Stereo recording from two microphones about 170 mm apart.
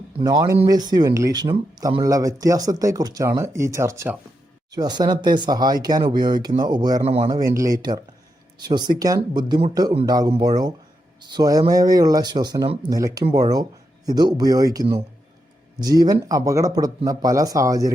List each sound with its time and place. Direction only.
0.2 s speech: 25° right (ahead or behind)
7.0 s speech: 35° right (ahead or behind)
7.3 s speech: 20° right (ahead or behind)